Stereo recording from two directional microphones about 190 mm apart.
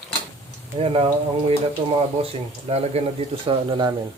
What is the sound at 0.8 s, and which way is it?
Speech, 30° right (ahead or behind).